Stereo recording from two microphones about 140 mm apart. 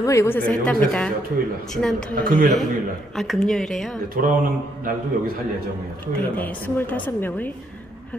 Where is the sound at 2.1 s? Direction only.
80° right.